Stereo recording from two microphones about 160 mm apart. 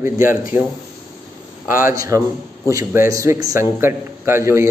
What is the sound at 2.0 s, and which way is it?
A man's voice, 20° right (ahead or behind).